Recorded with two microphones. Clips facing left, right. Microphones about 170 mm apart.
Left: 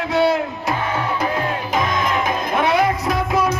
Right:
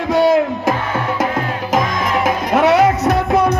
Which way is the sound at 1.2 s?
90° right.